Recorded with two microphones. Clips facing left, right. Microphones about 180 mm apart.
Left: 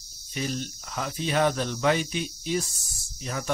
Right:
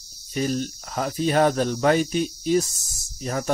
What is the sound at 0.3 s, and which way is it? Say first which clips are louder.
Speech: right 6 dB; 45° right (ahead or behind).